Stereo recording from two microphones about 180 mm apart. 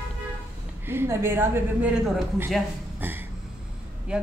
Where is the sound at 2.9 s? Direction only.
10° right (ahead or behind).